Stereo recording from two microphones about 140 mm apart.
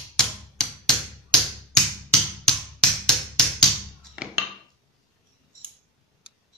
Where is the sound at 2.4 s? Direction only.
5° left (ahead or behind).